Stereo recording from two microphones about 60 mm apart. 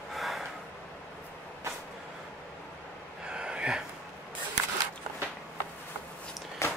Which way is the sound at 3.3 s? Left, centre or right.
Centre.